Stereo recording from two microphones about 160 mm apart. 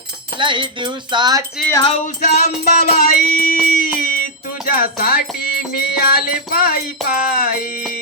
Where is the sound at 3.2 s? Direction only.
60° left (ahead or behind).